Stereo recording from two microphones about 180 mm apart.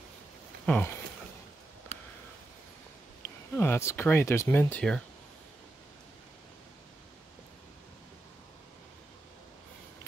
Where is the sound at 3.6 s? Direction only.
15° left (ahead or behind).